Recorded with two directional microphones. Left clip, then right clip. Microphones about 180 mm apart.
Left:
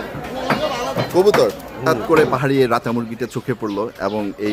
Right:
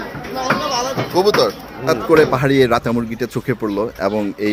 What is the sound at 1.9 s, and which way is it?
Speech, 15° right (ahead or behind).